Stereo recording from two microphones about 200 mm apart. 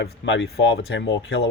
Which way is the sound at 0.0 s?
60° left (ahead or behind).